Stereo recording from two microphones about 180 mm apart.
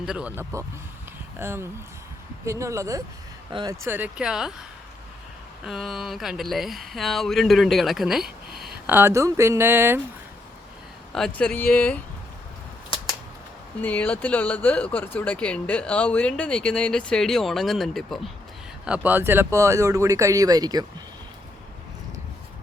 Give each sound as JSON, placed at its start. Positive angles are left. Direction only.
{"t": 0.0, "sound": "speech", "side_deg": -5}
{"t": 3.8, "sound": "speech", "side_deg": -10}
{"t": 5.6, "sound": "speech", "side_deg": 0}
{"t": 8.9, "sound": "speech", "side_deg": -15}
{"t": 11.1, "sound": "speech", "side_deg": 5}
{"t": 13.8, "sound": "speech", "side_deg": 10}
{"t": 18.9, "sound": "speech", "side_deg": -10}